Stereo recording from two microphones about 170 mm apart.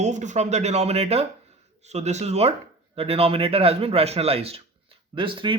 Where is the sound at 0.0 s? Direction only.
45° right (ahead or behind).